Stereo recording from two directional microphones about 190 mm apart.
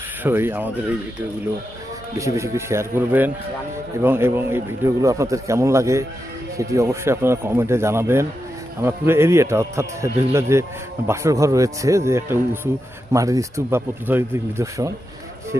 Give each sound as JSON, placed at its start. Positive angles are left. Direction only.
{"t": 0.2, "sound": "a man's voice", "side_deg": -10}
{"t": 2.1, "sound": "a man's voice", "side_deg": -15}